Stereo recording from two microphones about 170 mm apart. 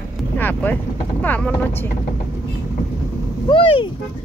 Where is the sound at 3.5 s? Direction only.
30° left (ahead or behind).